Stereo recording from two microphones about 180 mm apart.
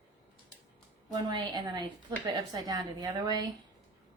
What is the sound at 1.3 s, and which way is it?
A woman's voice, 25° right (ahead or behind).